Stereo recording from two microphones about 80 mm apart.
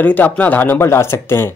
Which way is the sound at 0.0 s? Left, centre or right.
Left.